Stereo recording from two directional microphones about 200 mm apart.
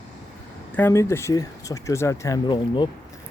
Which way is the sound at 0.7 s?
10° left (ahead or behind).